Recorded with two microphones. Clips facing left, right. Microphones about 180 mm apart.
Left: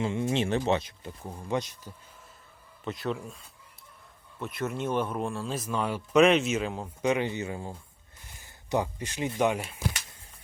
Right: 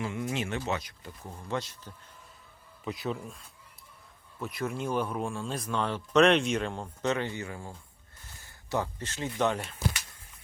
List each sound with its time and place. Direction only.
0.0 s speech: 25° left (ahead or behind)
2.8 s speech: centre (ahead or behind)